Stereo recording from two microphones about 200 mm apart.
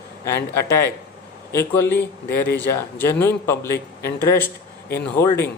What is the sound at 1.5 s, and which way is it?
Speech, 10° left (ahead or behind).